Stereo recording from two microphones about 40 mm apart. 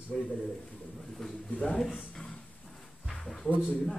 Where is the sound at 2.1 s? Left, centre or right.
Left.